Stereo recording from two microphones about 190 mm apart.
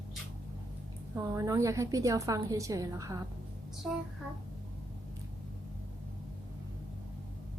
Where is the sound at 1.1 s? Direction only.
15° right (ahead or behind).